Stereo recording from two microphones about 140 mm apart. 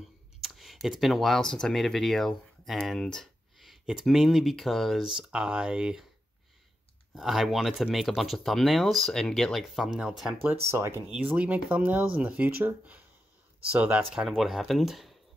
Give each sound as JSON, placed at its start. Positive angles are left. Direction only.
{"t": 0.4, "sound": "speech", "side_deg": 0}
{"t": 7.2, "sound": "speech", "side_deg": 0}
{"t": 10.4, "sound": "speech", "side_deg": -15}